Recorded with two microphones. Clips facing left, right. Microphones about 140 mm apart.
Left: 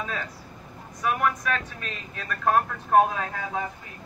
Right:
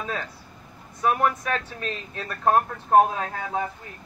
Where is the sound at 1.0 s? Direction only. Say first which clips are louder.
Right 3 dB; 35° right (ahead or behind).